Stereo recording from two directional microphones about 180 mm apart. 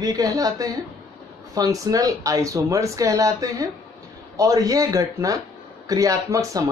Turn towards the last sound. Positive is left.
turn(degrees=-15)  # may be behind; listen again after turning